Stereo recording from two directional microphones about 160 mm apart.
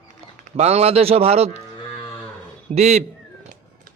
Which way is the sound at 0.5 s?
40° right (ahead or behind).